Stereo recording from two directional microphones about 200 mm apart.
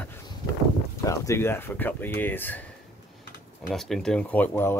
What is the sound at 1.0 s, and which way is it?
Speech, 15° left (ahead or behind).